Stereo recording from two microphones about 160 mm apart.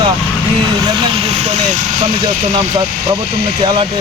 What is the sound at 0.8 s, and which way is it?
Speech, 30° right (ahead or behind).